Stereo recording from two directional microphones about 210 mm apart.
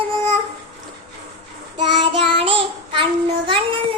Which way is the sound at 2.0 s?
25° right (ahead or behind).